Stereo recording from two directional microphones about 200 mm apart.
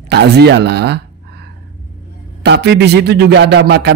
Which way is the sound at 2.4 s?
55° right (ahead or behind).